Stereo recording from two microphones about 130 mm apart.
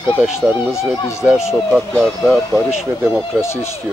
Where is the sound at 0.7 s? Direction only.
20° left (ahead or behind).